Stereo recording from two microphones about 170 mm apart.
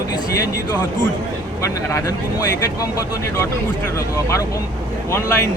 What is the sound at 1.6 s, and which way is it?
Speech, 20° left (ahead or behind).